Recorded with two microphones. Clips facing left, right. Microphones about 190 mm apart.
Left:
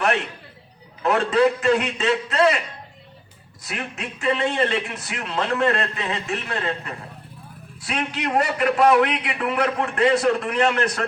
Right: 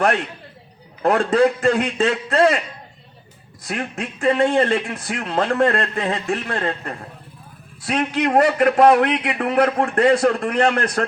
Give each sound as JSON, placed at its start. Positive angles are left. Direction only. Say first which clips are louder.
{"t": 1.0, "sound": "a man's voice", "louder": "right 2 dB", "side_deg": -50}
{"t": 3.7, "sound": "a man's voice", "louder": "right 5 dB", "side_deg": -50}